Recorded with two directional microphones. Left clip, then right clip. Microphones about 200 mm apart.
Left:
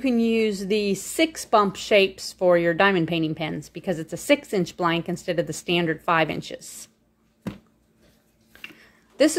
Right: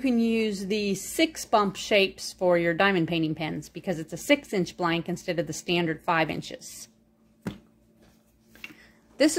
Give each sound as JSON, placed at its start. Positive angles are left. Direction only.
{"t": 0.0, "sound": "a woman's voice", "side_deg": 10}
{"t": 9.1, "sound": "speech", "side_deg": 10}